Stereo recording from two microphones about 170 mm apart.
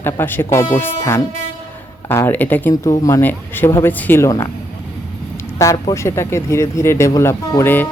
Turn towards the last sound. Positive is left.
turn(degrees=15)  # may be behind; listen again after turning